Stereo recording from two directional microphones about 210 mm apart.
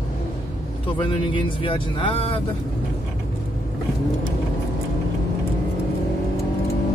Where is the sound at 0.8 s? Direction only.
25° left (ahead or behind).